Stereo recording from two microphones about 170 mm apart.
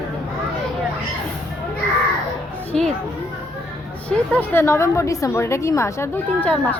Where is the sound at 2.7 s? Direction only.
5° left (ahead or behind).